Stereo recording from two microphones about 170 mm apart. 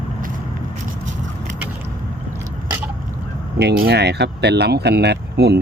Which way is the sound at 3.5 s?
75° right (ahead or behind).